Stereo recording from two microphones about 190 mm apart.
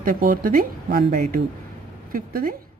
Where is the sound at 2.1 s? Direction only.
50° right (ahead or behind).